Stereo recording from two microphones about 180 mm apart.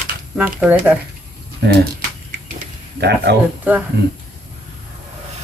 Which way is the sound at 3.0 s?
70° right (ahead or behind).